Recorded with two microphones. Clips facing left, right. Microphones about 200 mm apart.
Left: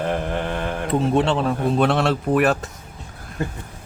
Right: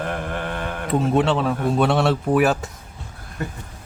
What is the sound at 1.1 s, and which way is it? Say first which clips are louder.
Speech: right 1 dB; 5° right (ahead or behind).